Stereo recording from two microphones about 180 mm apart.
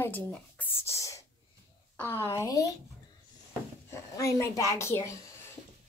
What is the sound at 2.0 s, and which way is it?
Speech, 10° left (ahead or behind).